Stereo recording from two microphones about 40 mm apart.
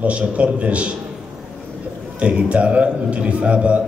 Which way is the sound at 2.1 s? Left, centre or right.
Right.